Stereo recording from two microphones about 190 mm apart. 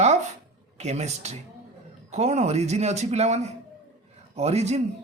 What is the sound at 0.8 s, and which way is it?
Speech, 35° right (ahead or behind).